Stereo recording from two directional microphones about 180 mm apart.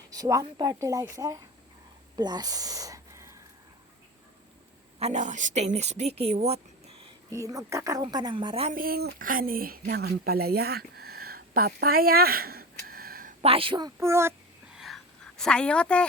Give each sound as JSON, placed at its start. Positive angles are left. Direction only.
{"t": 0.1, "sound": "a woman's voice", "side_deg": -20}
{"t": 2.1, "sound": "a sound", "side_deg": -20}
{"t": 4.9, "sound": "a woman's voice", "side_deg": -40}
{"t": 7.3, "sound": "a woman's voice", "side_deg": -15}
{"t": 8.7, "sound": "speech", "side_deg": -55}
{"t": 13.4, "sound": "a woman's voice", "side_deg": -30}
{"t": 14.8, "sound": "a sound", "side_deg": 0}